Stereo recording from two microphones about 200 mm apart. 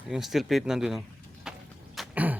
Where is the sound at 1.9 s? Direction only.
5° right (ahead or behind).